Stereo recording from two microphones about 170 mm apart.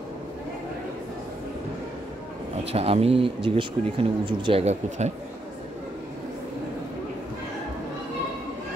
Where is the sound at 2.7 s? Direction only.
35° right (ahead or behind).